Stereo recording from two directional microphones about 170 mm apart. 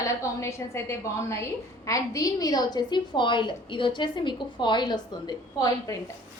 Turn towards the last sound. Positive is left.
turn(degrees=20)  # may be behind; listen again after turning